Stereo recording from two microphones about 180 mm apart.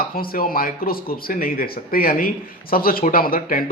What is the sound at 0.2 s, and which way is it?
A man's voice, 55° left (ahead or behind).